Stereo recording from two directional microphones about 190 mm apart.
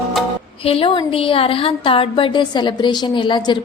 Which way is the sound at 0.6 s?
30° left (ahead or behind).